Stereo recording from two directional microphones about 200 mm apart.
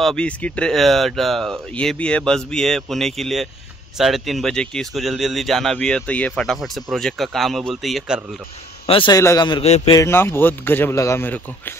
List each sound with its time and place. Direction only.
0.0 s speech: 5° left (ahead or behind)
8.8 s a man's voice: 25° left (ahead or behind)
9.9 s a man's voice: 10° left (ahead or behind)